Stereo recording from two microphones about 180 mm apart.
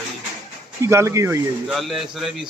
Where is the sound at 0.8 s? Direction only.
15° right (ahead or behind).